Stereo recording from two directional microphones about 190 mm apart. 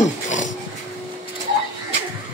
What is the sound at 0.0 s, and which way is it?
Dog, 40° left (ahead or behind).